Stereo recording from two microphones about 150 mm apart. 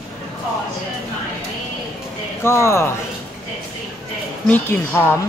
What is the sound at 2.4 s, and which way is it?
Speech, 20° left (ahead or behind).